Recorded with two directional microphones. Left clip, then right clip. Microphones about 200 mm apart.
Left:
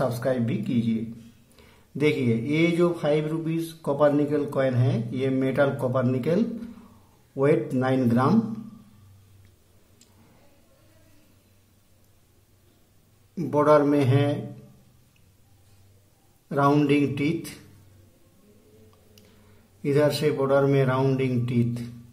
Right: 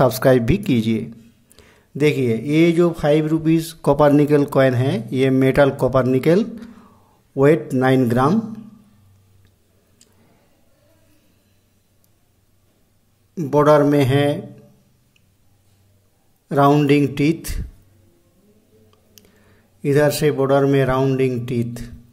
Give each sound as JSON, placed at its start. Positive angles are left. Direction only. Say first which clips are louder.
{"t": 0.0, "sound": "speech", "louder": "right 11 dB", "side_deg": -40}
{"t": 1.6, "sound": "speech", "louder": "right 6 dB", "side_deg": -25}
{"t": 8.0, "sound": "speech", "louder": "right 6 dB", "side_deg": -30}
{"t": 13.5, "sound": "speech", "louder": "right 5 dB", "side_deg": -30}
{"t": 16.4, "sound": "a man's voice", "louder": "right 7 dB", "side_deg": -30}
{"t": 19.8, "sound": "a man's voice", "louder": "right 6 dB", "side_deg": -30}